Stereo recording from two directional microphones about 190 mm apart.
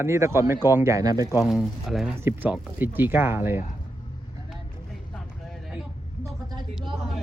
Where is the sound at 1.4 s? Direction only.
Centre (ahead or behind).